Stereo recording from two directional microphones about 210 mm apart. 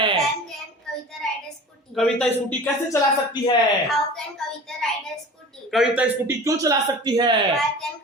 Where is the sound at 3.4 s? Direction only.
20° left (ahead or behind).